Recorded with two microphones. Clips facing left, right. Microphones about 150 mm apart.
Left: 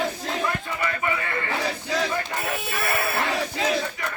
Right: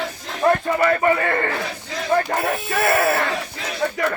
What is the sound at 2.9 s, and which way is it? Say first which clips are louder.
Music: right 9 dB; 55° right (ahead or behind).